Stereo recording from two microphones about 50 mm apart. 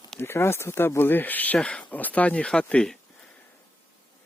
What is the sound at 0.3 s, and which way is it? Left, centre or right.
Speech, left.